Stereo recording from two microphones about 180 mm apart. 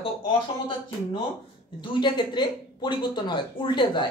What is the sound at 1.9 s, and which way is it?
Speech, 25° left (ahead or behind).